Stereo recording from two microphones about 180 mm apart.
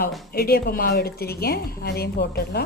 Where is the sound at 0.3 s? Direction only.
60° left (ahead or behind).